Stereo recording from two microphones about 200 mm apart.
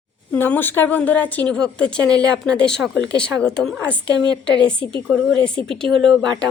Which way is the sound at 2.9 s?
65° left (ahead or behind).